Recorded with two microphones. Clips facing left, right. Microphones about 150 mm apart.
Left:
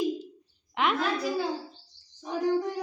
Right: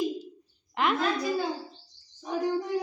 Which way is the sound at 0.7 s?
Centre (ahead or behind).